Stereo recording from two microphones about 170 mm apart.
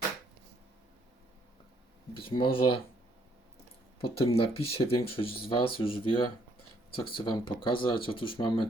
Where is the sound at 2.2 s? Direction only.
30° left (ahead or behind).